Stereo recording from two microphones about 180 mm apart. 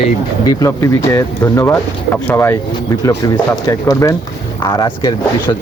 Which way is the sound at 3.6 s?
20° left (ahead or behind).